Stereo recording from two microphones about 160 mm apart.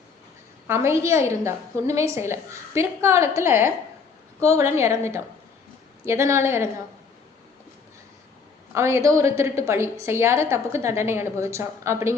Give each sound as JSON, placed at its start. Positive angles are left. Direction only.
{"t": 0.7, "sound": "a woman's voice", "side_deg": -15}
{"t": 8.7, "sound": "a woman's voice", "side_deg": -15}